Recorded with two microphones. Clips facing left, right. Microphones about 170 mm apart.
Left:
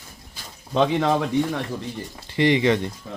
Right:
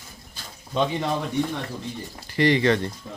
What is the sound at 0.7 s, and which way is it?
Speech, 90° left.